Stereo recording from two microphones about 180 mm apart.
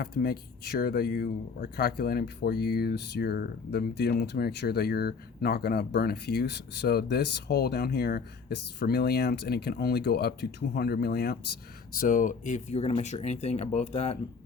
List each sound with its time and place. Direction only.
0.0 s speech: 60° left (ahead or behind)
11.9 s speech: 45° left (ahead or behind)